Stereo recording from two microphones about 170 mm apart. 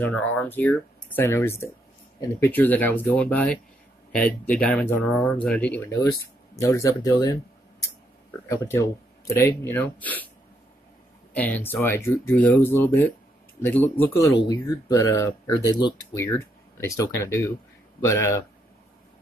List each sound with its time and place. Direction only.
0.0 s speech: 10° left (ahead or behind)
6.5 s speech: 20° left (ahead or behind)
11.3 s speech: 10° left (ahead or behind)